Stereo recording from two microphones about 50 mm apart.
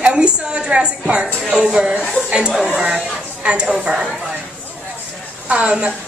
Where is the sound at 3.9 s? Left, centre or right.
Centre.